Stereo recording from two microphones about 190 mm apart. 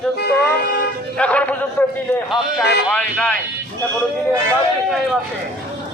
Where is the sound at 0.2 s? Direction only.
60° left (ahead or behind).